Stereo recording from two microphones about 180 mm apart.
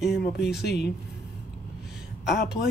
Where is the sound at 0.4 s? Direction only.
65° left (ahead or behind).